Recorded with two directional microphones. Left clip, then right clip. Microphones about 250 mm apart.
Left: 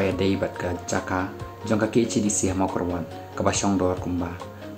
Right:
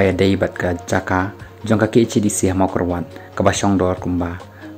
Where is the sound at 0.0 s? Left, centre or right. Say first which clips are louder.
Right 8 dB; right.